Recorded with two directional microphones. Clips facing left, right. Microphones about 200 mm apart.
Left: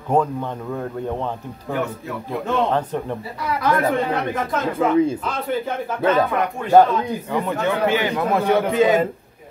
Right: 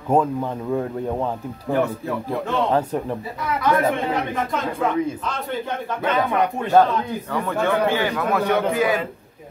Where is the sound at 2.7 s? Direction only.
10° right (ahead or behind).